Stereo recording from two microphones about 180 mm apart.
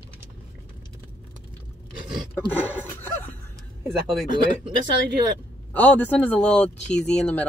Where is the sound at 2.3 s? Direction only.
10° left (ahead or behind).